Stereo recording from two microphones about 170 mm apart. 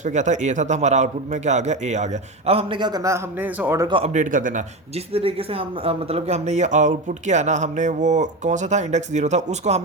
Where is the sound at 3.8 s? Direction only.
30° right (ahead or behind).